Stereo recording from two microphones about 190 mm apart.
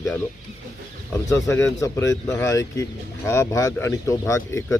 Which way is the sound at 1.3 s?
15° left (ahead or behind).